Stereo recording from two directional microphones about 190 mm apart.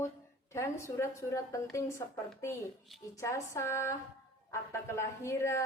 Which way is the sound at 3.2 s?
15° left (ahead or behind).